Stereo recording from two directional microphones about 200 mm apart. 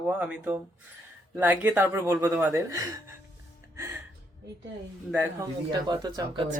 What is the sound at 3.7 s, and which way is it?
Music, 15° right (ahead or behind).